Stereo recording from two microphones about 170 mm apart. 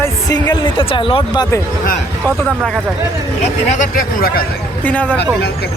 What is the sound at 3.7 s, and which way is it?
Speech, 50° left (ahead or behind).